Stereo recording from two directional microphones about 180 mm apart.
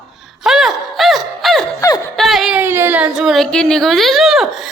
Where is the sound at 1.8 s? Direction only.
20° left (ahead or behind).